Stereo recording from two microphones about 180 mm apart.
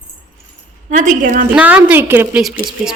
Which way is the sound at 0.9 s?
45° right (ahead or behind).